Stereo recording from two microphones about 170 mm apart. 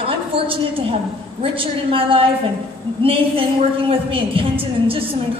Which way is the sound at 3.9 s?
30° right (ahead or behind).